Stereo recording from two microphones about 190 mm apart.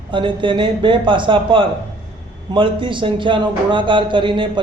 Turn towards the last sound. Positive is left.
turn(degrees=-25)  # may be behind; listen again after turning